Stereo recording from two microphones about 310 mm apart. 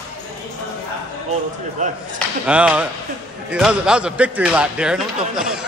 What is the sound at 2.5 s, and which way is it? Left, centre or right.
Speech, centre.